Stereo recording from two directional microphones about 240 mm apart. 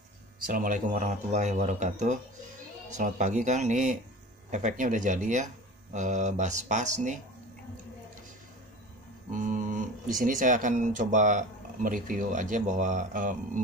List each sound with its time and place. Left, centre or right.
0.5 s speech: right
9.3 s speech: right